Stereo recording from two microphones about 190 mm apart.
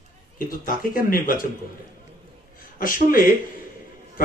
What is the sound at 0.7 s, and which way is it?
Speech, 45° left (ahead or behind).